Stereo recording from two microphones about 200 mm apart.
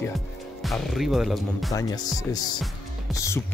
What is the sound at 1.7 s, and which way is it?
Speech, 20° left (ahead or behind).